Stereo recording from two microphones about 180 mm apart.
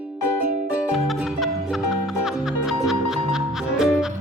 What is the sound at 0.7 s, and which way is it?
Music, 5° right (ahead or behind).